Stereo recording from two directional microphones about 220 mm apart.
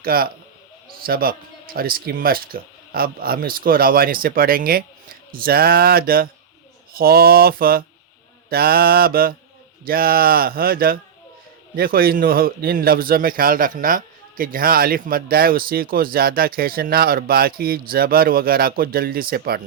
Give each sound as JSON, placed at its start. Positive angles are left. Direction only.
{"t": 0.0, "sound": "a man's voice", "side_deg": -40}